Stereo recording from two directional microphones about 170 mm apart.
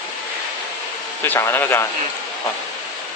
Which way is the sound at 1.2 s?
15° left (ahead or behind).